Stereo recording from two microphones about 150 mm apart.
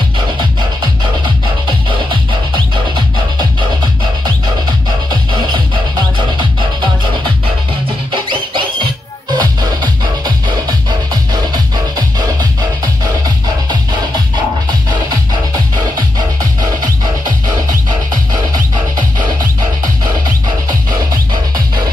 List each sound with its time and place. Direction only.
6.1 s music: 30° right (ahead or behind)
8.1 s music: 35° right (ahead or behind)
12.2 s music: 30° right (ahead or behind)